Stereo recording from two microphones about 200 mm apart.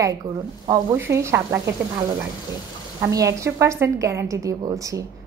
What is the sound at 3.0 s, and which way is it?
A woman's voice, 15° right (ahead or behind).